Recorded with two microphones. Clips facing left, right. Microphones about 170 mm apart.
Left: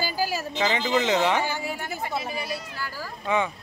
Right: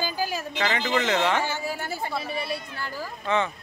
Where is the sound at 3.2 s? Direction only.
10° left (ahead or behind).